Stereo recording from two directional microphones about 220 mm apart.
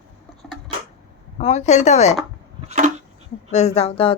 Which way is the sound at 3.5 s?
30° left (ahead or behind).